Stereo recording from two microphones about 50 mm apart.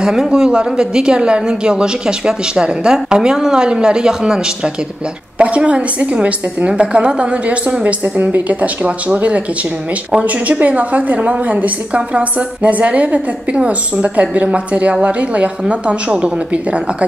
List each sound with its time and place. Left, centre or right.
0.0 s a woman's voice: centre